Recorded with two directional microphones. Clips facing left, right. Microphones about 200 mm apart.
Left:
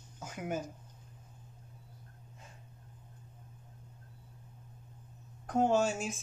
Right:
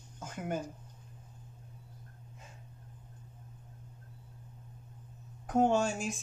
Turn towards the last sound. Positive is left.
turn(degrees=5)  # may be behind; listen again after turning